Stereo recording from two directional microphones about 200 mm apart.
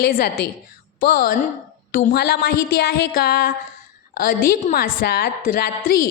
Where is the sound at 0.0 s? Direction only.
45° left (ahead or behind).